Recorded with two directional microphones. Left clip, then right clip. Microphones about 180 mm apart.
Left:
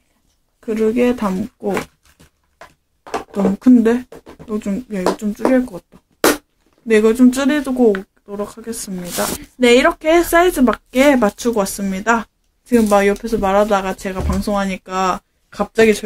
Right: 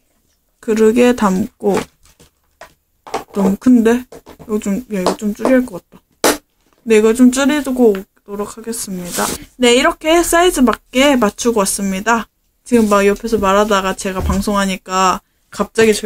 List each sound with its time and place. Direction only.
0.6 s speech: 30° right (ahead or behind)
3.5 s speech: 10° right (ahead or behind)